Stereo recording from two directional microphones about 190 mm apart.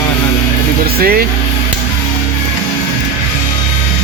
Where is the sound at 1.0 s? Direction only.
50° right (ahead or behind).